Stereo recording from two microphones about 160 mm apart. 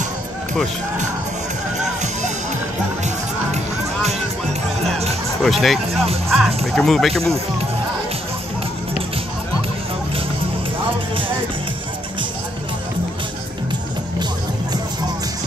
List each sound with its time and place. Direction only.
3.5 s music: 40° right (ahead or behind)
5.4 s speech: centre (ahead or behind)
6.2 s music: centre (ahead or behind)
6.7 s speech: centre (ahead or behind)